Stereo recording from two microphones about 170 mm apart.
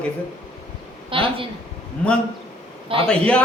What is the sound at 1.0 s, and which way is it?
Speech, 30° right (ahead or behind).